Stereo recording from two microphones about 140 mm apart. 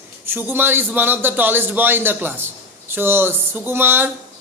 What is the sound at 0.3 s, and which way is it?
Speech, 15° right (ahead or behind).